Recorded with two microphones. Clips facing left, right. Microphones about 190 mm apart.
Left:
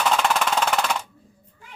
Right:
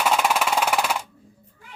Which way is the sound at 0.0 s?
10° right (ahead or behind).